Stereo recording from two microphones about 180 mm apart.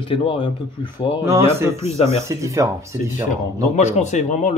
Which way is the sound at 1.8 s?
35° left (ahead or behind).